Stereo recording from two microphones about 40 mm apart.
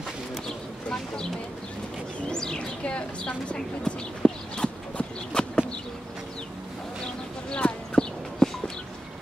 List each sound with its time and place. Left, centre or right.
2.2 s bird: centre
2.8 s a woman's voice: left
3.5 s clip-clop: centre
7.5 s clip-clop: left
8.4 s a sound: left